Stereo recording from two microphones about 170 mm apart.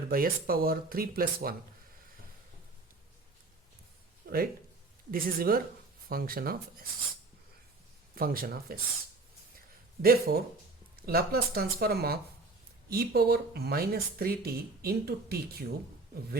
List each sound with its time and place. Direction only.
0.1 s speech: 60° right (ahead or behind)
4.2 s a sound: 65° right (ahead or behind)
5.1 s speech: 60° right (ahead or behind)
8.1 s speech: 60° right (ahead or behind)
10.0 s speech: 60° right (ahead or behind)